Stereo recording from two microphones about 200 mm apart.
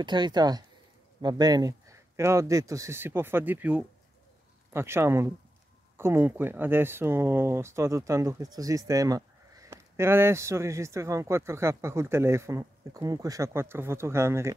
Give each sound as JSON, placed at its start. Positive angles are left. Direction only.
{"t": 0.0, "sound": "speech", "side_deg": -20}